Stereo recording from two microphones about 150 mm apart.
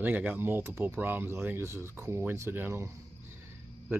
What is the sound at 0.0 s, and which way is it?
Speech, 10° right (ahead or behind).